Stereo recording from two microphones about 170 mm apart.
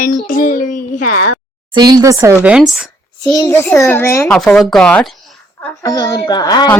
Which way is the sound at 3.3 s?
20° left (ahead or behind).